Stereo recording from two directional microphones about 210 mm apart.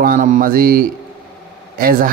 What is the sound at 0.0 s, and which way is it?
Speech, 40° right (ahead or behind).